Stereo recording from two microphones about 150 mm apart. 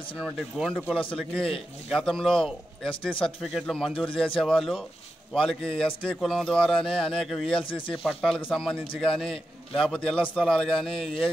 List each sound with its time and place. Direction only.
0.2 s a man's voice: 5° left (ahead or behind)
3.2 s speech: 35° left (ahead or behind)
3.4 s a man's voice: centre (ahead or behind)
7.5 s speech: 35° left (ahead or behind)
8.0 s a man's voice: centre (ahead or behind)